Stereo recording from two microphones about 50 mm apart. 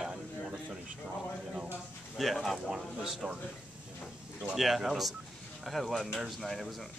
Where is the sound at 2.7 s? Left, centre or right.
Centre.